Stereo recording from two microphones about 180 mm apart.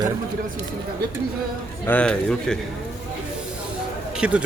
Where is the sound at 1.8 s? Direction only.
10° left (ahead or behind).